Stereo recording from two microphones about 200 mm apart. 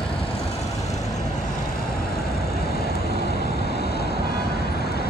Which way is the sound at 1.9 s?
50° left (ahead or behind).